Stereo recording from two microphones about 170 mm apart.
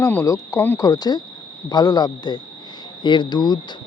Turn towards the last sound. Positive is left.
turn(degrees=25)  # may be behind; listen again after turning